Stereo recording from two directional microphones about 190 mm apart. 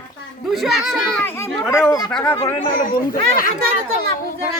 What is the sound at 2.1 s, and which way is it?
Speech, 5° left (ahead or behind).